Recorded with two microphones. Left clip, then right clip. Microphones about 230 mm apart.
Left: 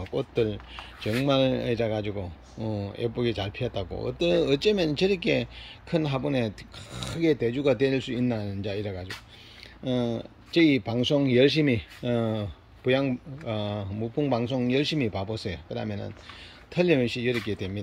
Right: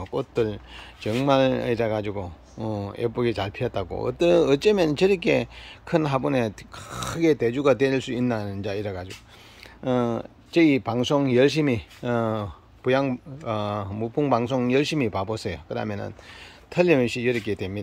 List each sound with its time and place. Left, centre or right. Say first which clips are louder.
0.3 s speech: right 2 dB; centre
1.1 s speech: right 4 dB; right
2.0 s speech: right 3 dB; centre
13.9 s speech: right 2 dB; right
14.3 s speech: right 5 dB; centre